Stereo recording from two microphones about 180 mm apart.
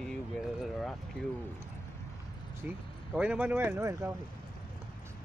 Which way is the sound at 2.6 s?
10° right (ahead or behind).